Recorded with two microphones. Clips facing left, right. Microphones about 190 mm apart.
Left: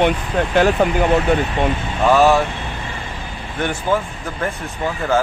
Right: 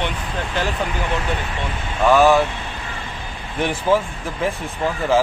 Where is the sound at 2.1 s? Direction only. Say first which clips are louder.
Even; centre (ahead or behind).